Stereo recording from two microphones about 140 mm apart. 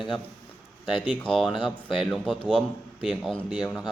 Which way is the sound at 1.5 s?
35° left (ahead or behind).